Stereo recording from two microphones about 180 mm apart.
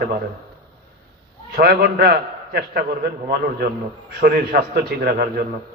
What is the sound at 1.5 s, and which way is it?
A man's voice, 60° right (ahead or behind).